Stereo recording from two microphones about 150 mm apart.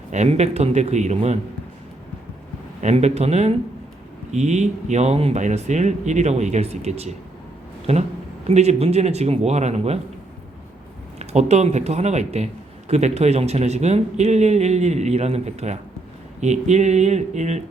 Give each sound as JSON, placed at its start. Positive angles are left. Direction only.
{"t": 0.1, "sound": "speech", "side_deg": -50}
{"t": 2.8, "sound": "speech", "side_deg": -50}
{"t": 11.2, "sound": "speech", "side_deg": -45}